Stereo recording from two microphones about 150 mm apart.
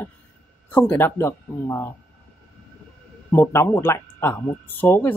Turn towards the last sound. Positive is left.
turn(degrees=15)  # may be behind; listen again after turning